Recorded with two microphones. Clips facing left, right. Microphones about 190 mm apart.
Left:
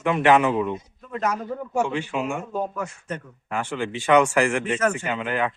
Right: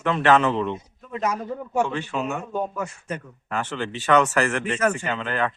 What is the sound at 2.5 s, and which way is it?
Speech, 5° right (ahead or behind).